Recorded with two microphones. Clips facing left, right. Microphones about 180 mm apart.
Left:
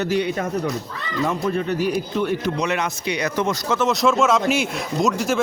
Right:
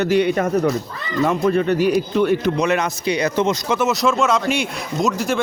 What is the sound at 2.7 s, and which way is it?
Speech, 40° right (ahead or behind).